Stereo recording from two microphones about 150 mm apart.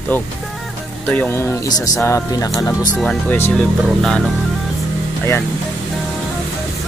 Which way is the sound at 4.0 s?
5° left (ahead or behind).